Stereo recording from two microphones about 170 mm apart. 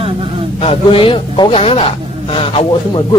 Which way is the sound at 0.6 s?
35° left (ahead or behind).